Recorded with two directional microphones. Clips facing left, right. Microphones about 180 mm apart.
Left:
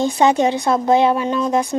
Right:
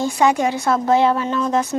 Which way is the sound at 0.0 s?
20° left (ahead or behind).